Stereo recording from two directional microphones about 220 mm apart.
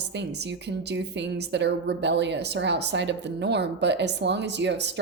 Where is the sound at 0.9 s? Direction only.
50° right (ahead or behind).